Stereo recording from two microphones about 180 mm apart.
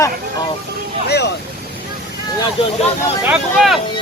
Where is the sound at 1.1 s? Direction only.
65° left (ahead or behind).